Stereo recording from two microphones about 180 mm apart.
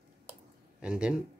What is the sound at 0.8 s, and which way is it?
Speech, 5° right (ahead or behind).